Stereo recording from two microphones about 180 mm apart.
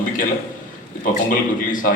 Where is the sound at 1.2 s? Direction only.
50° left (ahead or behind).